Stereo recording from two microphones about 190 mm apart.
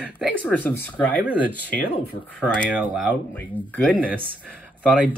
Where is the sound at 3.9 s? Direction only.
10° right (ahead or behind).